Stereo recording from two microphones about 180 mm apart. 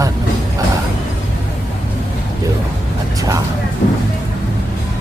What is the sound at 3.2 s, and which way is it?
Speech, 20° right (ahead or behind).